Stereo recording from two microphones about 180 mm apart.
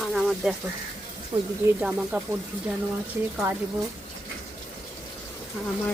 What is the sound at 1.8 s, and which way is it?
Speech, 10° right (ahead or behind).